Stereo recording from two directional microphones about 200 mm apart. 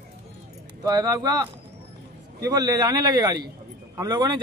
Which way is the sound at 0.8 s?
20° right (ahead or behind).